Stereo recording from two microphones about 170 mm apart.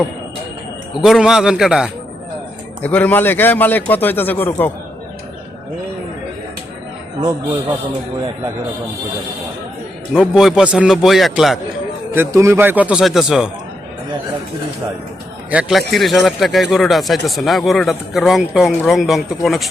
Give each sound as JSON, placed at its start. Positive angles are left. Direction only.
{"t": 1.0, "sound": "speech", "side_deg": 0}
{"t": 2.8, "sound": "a man's voice", "side_deg": 10}
{"t": 7.2, "sound": "a man's voice", "side_deg": -25}
{"t": 10.2, "sound": "speech", "side_deg": -5}
{"t": 12.1, "sound": "a man's voice", "side_deg": -15}
{"t": 15.4, "sound": "a man's voice", "side_deg": -5}